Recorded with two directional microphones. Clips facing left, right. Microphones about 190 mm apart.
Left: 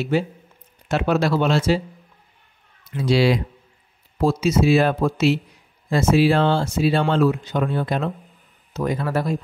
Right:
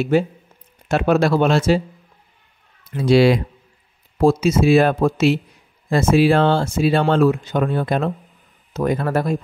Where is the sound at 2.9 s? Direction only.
50° right (ahead or behind).